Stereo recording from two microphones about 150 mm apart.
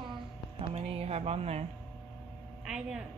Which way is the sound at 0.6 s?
40° right (ahead or behind).